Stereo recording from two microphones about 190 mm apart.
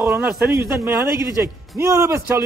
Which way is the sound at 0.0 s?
15° right (ahead or behind).